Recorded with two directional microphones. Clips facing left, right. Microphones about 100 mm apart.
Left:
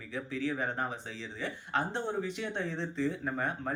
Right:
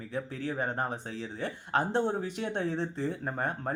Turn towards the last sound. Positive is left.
turn(degrees=-40)  # may be behind; listen again after turning